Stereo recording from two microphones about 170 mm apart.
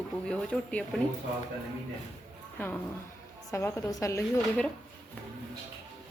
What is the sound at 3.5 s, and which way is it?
Speech, 20° left (ahead or behind).